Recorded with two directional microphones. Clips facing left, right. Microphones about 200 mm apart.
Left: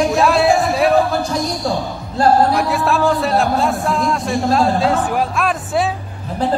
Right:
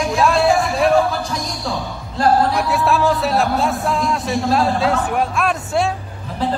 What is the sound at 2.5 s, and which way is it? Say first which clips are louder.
A man's voice: left 1 dB; centre (ahead or behind).